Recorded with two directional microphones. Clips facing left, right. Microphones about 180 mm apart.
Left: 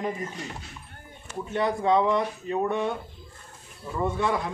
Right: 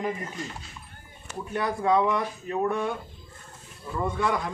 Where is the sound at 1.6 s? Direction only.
20° left (ahead or behind).